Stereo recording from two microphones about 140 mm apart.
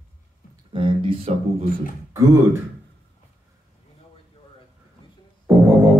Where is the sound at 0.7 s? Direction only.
40° right (ahead or behind).